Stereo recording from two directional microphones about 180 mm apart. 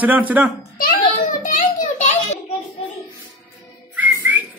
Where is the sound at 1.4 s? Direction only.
50° left (ahead or behind).